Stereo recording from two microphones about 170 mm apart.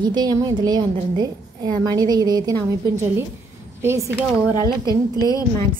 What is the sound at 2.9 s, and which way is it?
A woman's voice, 15° right (ahead or behind).